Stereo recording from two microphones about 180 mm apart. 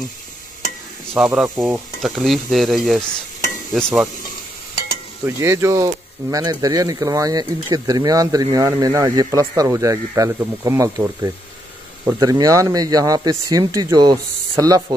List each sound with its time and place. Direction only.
1.1 s speech: centre (ahead or behind)
5.2 s speech: 15° right (ahead or behind)